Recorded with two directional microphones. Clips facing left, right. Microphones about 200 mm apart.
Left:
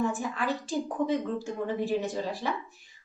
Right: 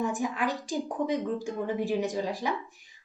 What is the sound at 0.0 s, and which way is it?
Speech, 15° right (ahead or behind).